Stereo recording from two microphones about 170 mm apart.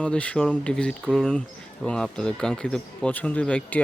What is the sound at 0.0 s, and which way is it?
Speech, 5° left (ahead or behind).